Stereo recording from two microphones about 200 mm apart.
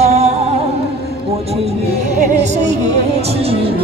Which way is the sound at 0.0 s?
35° right (ahead or behind).